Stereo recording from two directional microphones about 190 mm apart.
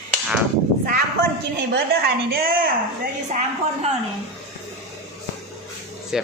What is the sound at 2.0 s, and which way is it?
Speech, 55° right (ahead or behind).